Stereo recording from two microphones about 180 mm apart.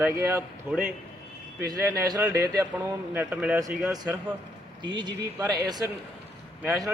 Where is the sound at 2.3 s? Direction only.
60° right (ahead or behind).